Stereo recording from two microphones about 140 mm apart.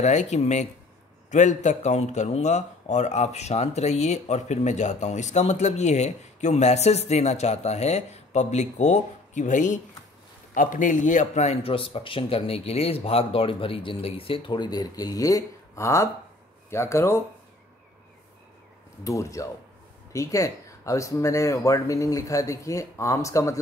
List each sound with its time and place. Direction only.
0.0 s speech: 55° left (ahead or behind); by 17.2 s 20° left (ahead or behind)
19.0 s speech: 25° left (ahead or behind)